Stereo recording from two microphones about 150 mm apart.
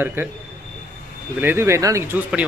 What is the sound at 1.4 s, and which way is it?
Speech, 15° right (ahead or behind).